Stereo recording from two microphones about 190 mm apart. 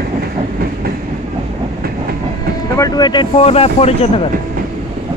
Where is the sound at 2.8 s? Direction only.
20° left (ahead or behind).